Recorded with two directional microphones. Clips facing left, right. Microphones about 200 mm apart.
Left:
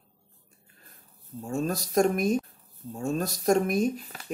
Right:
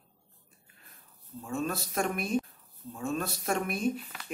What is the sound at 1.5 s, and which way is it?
Speech, 40° left (ahead or behind).